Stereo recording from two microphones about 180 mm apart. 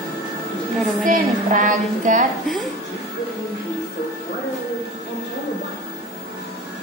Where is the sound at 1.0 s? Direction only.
45° right (ahead or behind).